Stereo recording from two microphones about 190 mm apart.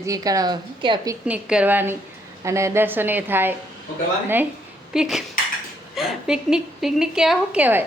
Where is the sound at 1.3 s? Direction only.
5° right (ahead or behind).